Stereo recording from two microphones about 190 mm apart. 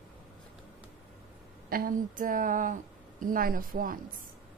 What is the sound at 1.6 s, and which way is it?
A woman's voice, 50° right (ahead or behind).